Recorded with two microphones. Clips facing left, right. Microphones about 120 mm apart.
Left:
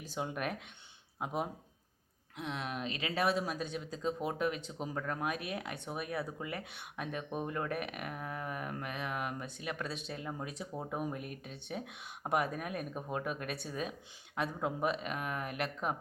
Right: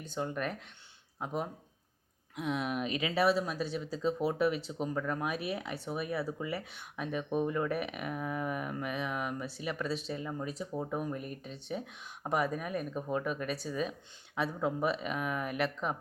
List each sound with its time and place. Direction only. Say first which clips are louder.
0.0 s speech: right 2 dB; 5° left (ahead or behind)
2.3 s speech: right 6 dB; 5° right (ahead or behind)
15.4 s speech: right 5 dB; 45° left (ahead or behind)